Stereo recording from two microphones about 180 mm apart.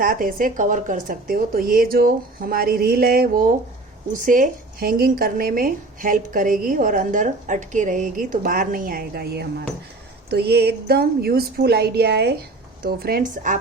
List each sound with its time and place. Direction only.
0.0 s a woman's voice: 50° right (ahead or behind)